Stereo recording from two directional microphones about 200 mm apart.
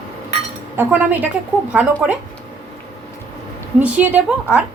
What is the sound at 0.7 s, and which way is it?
Speech, 10° right (ahead or behind).